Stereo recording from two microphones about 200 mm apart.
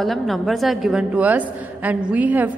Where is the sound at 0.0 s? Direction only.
Centre (ahead or behind).